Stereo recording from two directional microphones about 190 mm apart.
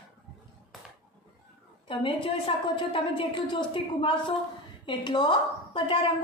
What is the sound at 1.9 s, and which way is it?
A woman's voice, 25° left (ahead or behind).